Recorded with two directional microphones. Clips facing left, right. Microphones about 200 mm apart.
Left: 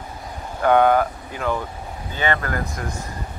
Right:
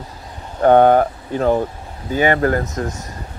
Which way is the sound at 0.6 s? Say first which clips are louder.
Right 5 dB; 45° right (ahead or behind).